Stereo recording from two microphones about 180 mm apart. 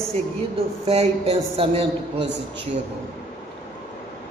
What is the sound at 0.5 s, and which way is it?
A man's voice, 35° right (ahead or behind).